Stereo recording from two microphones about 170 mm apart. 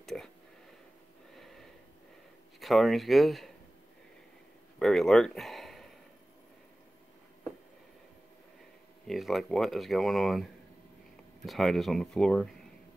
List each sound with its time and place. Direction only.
0.0 s speech: centre (ahead or behind)
1.3 s sniff: centre (ahead or behind)
2.6 s speech: centre (ahead or behind)
4.7 s speech: centre (ahead or behind)
9.0 s speech: centre (ahead or behind)